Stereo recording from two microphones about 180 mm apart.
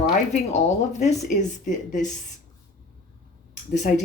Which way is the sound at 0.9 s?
40° left (ahead or behind).